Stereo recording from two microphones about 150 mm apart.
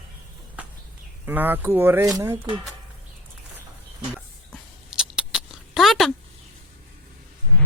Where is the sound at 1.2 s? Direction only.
10° right (ahead or behind).